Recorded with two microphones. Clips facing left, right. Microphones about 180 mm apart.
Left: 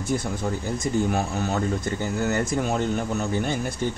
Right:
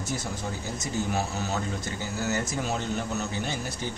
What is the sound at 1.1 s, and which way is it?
Speech, 55° left (ahead or behind).